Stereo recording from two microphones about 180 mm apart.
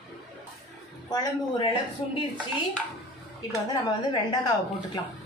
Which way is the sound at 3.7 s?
25° left (ahead or behind).